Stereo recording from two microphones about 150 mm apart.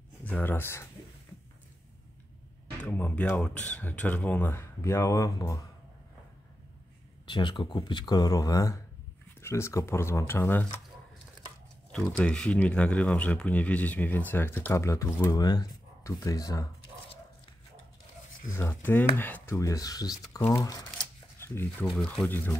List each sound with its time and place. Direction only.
0.2 s speech: 10° left (ahead or behind)
2.8 s speech: 10° left (ahead or behind)
7.2 s speech: 30° left (ahead or behind); by 10.7 s 15° left (ahead or behind)
11.9 s speech: 5° left (ahead or behind); by 16.6 s 25° left (ahead or behind)
18.5 s speech: 15° left (ahead or behind)
21.0 s shuffling cards: 15° left (ahead or behind)
21.8 s speech: 10° left (ahead or behind)